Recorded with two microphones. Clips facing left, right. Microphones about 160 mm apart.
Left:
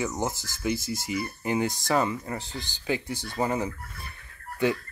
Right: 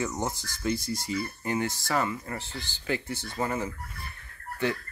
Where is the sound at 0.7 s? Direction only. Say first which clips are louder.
Even; 90° left.